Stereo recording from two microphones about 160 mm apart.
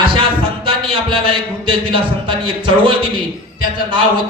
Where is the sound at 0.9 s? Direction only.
35° right (ahead or behind).